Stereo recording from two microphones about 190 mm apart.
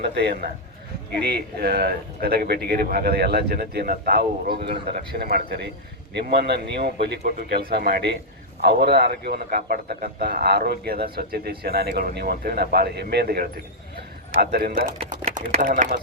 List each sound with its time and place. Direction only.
0.0 s a man's voice: 60° right (ahead or behind)
14.7 s speech: 45° right (ahead or behind)